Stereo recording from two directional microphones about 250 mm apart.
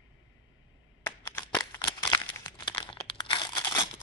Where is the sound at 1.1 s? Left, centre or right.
Centre.